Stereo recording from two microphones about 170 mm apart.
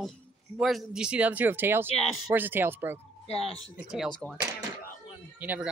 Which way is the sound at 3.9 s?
Centre (ahead or behind).